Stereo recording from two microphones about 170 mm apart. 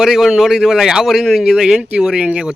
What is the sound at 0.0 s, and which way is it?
Speech, centre (ahead or behind).